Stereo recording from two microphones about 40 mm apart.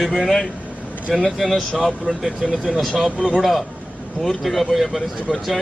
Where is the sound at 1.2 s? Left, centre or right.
Centre.